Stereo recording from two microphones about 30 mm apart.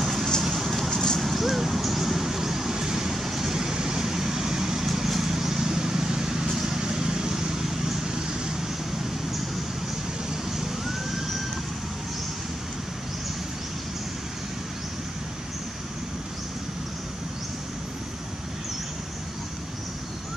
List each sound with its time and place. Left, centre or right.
0.0 s vehicle: centre
0.8 s vehicle: centre
1.2 s vehicle: centre
10.3 s police car: centre